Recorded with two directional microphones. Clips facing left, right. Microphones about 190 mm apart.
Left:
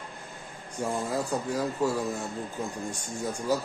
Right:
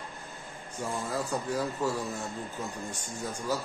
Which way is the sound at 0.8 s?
15° left (ahead or behind).